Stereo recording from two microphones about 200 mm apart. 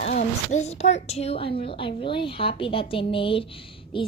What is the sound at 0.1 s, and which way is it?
A woman's voice, 40° left (ahead or behind).